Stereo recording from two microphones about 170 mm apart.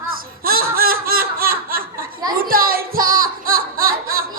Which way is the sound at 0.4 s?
60° right (ahead or behind).